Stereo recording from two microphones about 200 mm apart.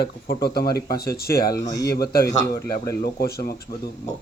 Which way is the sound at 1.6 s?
20° left (ahead or behind).